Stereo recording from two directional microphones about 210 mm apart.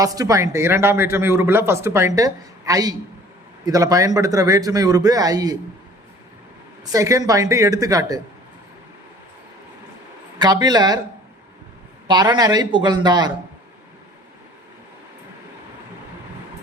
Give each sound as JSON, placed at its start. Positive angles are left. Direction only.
{"t": 0.0, "sound": "speech", "side_deg": -15}
{"t": 6.9, "sound": "speech", "side_deg": -15}
{"t": 10.3, "sound": "speech", "side_deg": -20}
{"t": 12.0, "sound": "speech", "side_deg": -20}